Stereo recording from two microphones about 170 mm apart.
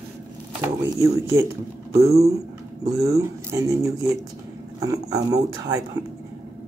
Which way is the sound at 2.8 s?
20° right (ahead or behind).